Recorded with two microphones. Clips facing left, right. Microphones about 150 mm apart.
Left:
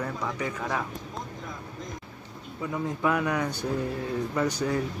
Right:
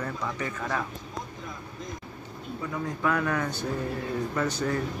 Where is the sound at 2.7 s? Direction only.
20° left (ahead or behind).